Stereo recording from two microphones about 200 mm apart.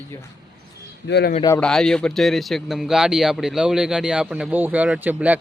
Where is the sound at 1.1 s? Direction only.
55° left (ahead or behind).